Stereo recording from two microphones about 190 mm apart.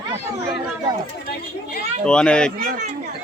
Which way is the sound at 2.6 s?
40° right (ahead or behind).